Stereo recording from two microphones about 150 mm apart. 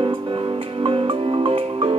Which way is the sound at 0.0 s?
35° right (ahead or behind).